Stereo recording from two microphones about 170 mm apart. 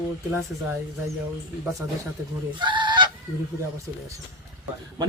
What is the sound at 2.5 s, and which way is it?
Goose, 25° right (ahead or behind).